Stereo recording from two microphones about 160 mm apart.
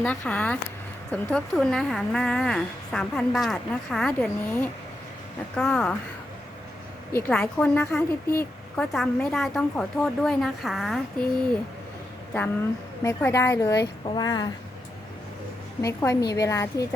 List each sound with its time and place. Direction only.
0.0 s a woman's voice: 5° left (ahead or behind)
7.1 s a woman's voice: 10° left (ahead or behind)
13.0 s a woman's voice: 20° left (ahead or behind)
15.8 s a woman's voice: 20° left (ahead or behind)